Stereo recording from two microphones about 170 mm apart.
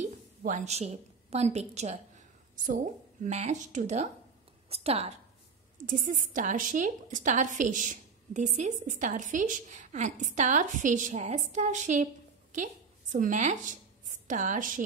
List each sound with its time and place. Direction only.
0.4 s a woman's voice: 45° right (ahead or behind)
5.8 s a woman's voice: 50° right (ahead or behind)
13.1 s speech: 50° right (ahead or behind)